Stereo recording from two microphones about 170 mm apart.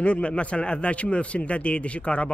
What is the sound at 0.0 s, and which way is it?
A man's voice, 5° left (ahead or behind).